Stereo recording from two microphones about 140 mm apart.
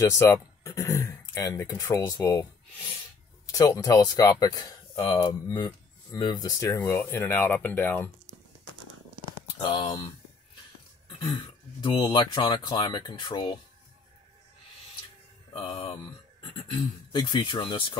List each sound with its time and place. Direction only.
0.0 s speech: 20° left (ahead or behind)
3.5 s speech: 25° left (ahead or behind)
9.6 s speech: 40° left (ahead or behind)
11.1 s speech: 35° left (ahead or behind)
15.5 s speech: 35° left (ahead or behind)